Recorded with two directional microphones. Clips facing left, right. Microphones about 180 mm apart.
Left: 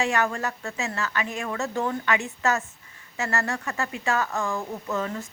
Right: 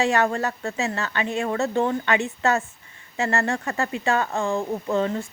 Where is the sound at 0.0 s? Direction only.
35° right (ahead or behind).